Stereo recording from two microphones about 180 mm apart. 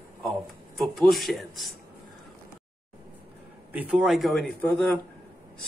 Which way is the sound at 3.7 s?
10° right (ahead or behind).